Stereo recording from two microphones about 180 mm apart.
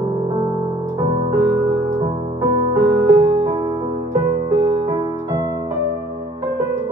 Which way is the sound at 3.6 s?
35° right (ahead or behind).